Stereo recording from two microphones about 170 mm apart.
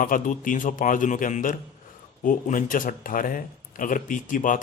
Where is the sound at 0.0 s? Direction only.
55° left (ahead or behind).